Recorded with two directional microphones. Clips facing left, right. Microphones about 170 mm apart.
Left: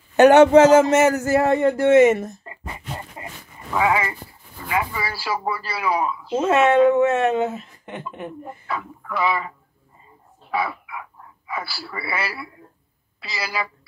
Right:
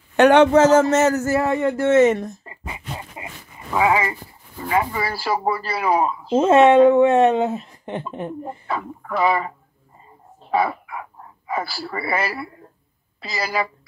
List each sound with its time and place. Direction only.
0.2 s a sound: 5° left (ahead or behind)
1.5 s speech: 30° left (ahead or behind)
1.9 s a sound: 10° left (ahead or behind)
3.2 s dog: 15° right (ahead or behind)
3.7 s speech: 20° right (ahead or behind)
4.6 s speech: 45° right (ahead or behind)
6.0 s speech: 30° right (ahead or behind)
10.5 s speech: 45° right (ahead or behind)